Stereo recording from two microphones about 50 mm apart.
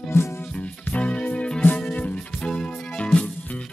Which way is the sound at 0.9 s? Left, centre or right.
Left.